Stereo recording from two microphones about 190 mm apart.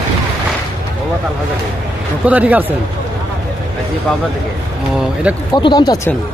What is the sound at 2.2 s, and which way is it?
Speech, 5° right (ahead or behind).